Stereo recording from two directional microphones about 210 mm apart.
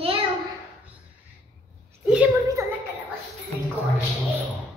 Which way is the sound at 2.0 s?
5° right (ahead or behind).